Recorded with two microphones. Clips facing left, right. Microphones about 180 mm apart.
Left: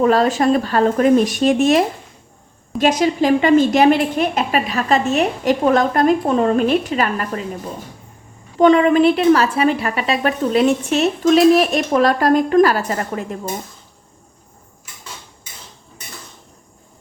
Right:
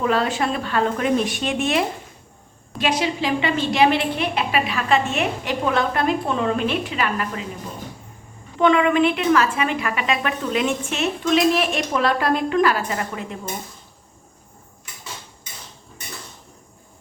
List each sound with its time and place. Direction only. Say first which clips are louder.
0.0 s a woman's voice: left 6 dB; 40° left (ahead or behind)
8.5 s a woman's voice: left 5 dB; 35° left (ahead or behind)